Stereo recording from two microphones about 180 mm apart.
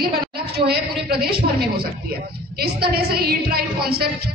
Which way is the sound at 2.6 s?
60° right (ahead or behind).